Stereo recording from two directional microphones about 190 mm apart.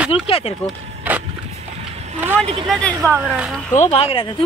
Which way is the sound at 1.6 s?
35° right (ahead or behind).